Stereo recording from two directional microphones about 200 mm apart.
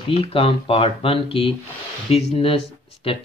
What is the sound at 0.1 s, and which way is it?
Speech, 30° left (ahead or behind).